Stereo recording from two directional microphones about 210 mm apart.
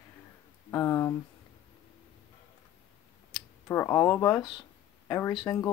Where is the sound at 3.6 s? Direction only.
10° left (ahead or behind).